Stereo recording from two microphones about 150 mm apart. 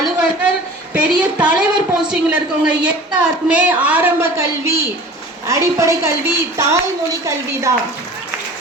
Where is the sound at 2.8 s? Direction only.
5° right (ahead or behind).